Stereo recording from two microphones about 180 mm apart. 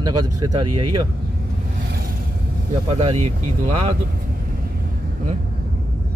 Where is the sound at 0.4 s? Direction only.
20° right (ahead or behind).